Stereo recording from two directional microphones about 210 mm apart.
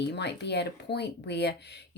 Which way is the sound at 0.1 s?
55° left (ahead or behind).